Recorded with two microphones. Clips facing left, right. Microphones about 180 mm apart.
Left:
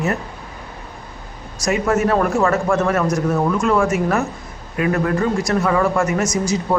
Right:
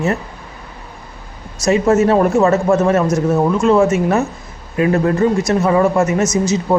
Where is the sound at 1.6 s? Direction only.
25° right (ahead or behind).